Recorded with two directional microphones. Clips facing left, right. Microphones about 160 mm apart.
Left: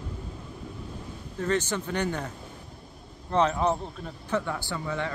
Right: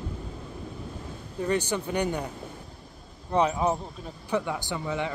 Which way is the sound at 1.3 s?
15° right (ahead or behind).